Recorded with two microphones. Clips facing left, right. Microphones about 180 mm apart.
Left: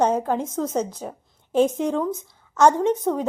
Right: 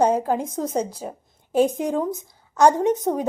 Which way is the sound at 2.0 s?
15° right (ahead or behind).